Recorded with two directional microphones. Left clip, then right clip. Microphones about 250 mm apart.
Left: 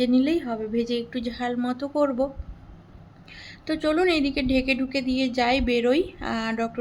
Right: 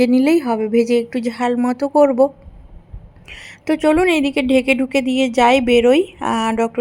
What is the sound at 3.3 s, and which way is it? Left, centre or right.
A woman's voice, right.